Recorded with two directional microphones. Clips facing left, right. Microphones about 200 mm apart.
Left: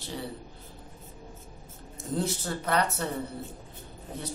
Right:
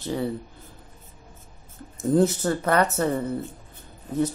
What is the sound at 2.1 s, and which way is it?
Speech, 50° right (ahead or behind).